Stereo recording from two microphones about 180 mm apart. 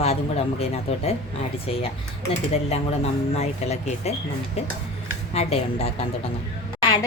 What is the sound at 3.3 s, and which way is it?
Speech, 35° left (ahead or behind).